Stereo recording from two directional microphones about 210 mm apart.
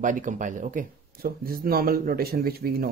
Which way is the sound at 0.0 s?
40° right (ahead or behind).